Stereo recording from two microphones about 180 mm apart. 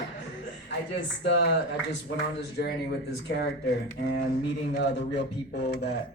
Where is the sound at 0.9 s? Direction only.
75° left (ahead or behind).